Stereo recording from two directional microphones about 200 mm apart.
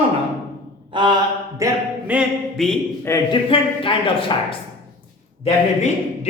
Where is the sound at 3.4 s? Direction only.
25° left (ahead or behind).